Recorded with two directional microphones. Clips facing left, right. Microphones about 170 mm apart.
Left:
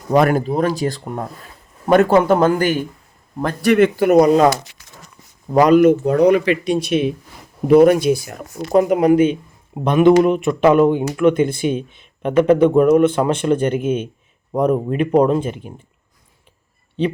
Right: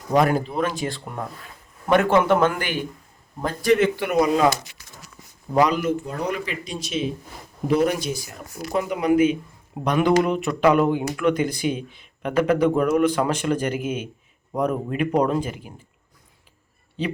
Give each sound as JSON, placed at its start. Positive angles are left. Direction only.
{"t": 0.1, "sound": "speech", "side_deg": 65}
{"t": 0.4, "sound": "speech", "side_deg": 40}
{"t": 3.4, "sound": "speech", "side_deg": 65}
{"t": 3.9, "sound": "speech", "side_deg": 40}
{"t": 5.5, "sound": "speech", "side_deg": 50}
{"t": 9.8, "sound": "a man's voice", "side_deg": 25}